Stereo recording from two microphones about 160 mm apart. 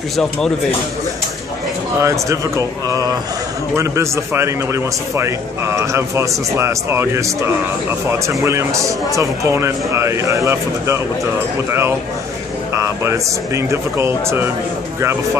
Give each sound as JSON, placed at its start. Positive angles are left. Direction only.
{"t": 0.1, "sound": "speech", "side_deg": 5}
{"t": 2.0, "sound": "a man's voice", "side_deg": -20}
{"t": 12.7, "sound": "a man's voice", "side_deg": -20}